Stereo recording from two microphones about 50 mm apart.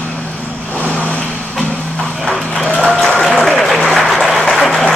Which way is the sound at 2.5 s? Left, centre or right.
Centre.